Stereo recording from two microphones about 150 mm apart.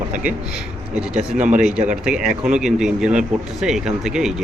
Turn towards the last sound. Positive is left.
turn(degrees=-5)  # may be behind; listen again after turning